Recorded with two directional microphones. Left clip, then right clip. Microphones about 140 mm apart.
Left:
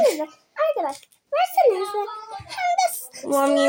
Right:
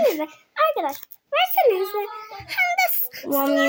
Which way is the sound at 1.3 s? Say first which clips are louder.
Even; 25° right (ahead or behind).